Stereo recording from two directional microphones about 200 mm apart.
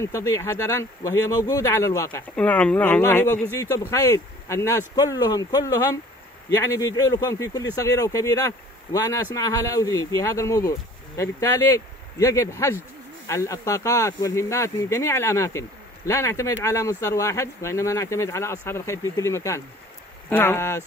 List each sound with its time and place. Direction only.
0.0 s speech: 15° left (ahead or behind)
7.0 s speech: 15° left (ahead or behind)